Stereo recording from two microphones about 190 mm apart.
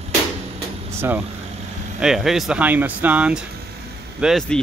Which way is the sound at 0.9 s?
10° right (ahead or behind).